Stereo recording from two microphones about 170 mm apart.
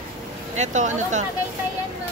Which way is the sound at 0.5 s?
45° right (ahead or behind).